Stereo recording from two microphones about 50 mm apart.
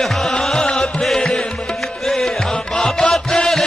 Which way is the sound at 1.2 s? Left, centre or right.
Centre.